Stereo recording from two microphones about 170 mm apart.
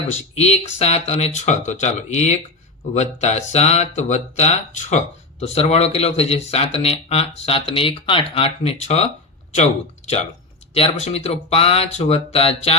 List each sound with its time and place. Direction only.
0.3 s speech: 40° left (ahead or behind)
10.8 s speech: 35° left (ahead or behind)